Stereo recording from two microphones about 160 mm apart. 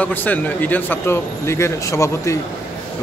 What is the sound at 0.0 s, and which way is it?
A man's voice, 10° left (ahead or behind).